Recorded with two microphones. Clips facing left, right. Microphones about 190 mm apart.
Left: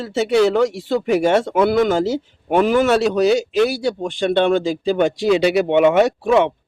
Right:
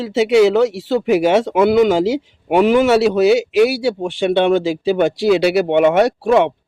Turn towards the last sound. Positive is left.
turn(degrees=0)  # may be behind; listen again after turning